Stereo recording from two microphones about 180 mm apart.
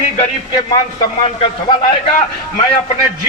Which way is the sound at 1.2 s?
30° left (ahead or behind).